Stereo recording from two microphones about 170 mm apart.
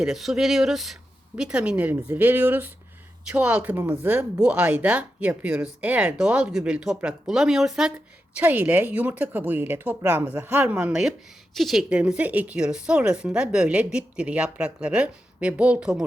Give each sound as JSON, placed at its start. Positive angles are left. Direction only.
{"t": 0.0, "sound": "speech", "side_deg": 0}